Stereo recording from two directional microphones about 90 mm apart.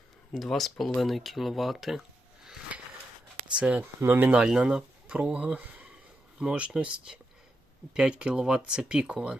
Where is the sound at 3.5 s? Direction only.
15° right (ahead or behind).